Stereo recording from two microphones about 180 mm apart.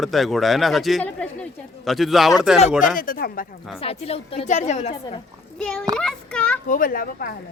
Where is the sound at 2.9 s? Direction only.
50° left (ahead or behind).